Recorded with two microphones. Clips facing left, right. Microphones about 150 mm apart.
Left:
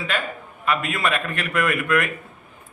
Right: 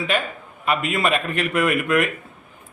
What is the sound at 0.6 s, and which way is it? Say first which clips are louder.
A man's voice: right 2 dB; 20° right (ahead or behind).